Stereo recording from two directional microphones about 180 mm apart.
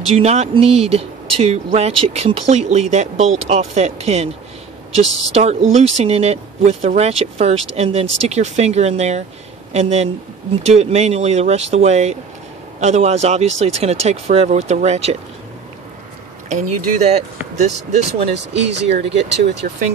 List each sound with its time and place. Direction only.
0.1 s speech: 35° right (ahead or behind)
16.4 s speech: 40° right (ahead or behind)
18.3 s speech: 75° right (ahead or behind)
18.9 s speech: 35° right (ahead or behind)
19.6 s speech: 50° right (ahead or behind)